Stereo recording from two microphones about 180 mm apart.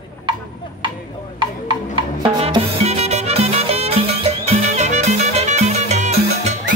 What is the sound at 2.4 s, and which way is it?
Music, 35° right (ahead or behind).